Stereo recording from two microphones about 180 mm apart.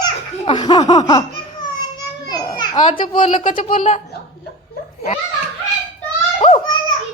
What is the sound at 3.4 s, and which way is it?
Speech, 45° left (ahead or behind).